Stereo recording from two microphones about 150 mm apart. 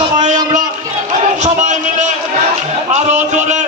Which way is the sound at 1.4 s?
50° right (ahead or behind).